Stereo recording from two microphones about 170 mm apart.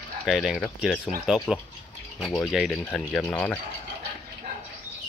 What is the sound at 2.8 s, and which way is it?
Speech, 10° left (ahead or behind).